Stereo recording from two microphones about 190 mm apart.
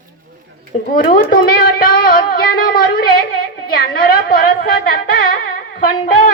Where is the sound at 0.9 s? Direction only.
50° left (ahead or behind).